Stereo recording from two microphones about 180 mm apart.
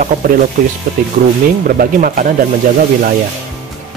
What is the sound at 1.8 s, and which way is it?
Speech, 50° right (ahead or behind).